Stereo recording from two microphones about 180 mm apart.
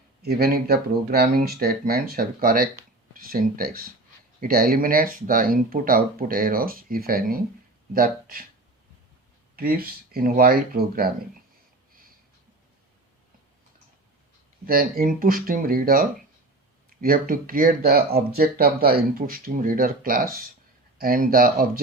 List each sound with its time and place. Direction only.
0.2 s speech: 60° right (ahead or behind)
9.6 s speech: 55° right (ahead or behind)
14.7 s speech: 55° right (ahead or behind)